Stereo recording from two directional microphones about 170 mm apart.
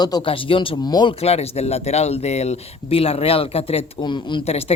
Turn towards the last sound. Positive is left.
turn(degrees=35)  # may be behind; listen again after turning